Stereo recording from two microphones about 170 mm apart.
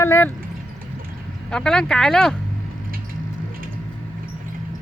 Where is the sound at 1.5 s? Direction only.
5° left (ahead or behind).